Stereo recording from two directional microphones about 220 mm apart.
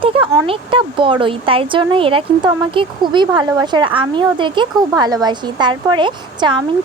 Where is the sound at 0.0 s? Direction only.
25° right (ahead or behind).